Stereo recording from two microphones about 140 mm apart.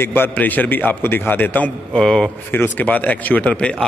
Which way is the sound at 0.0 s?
15° left (ahead or behind).